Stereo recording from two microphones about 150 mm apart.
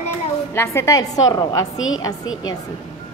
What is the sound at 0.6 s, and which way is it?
A woman's voice, 20° left (ahead or behind).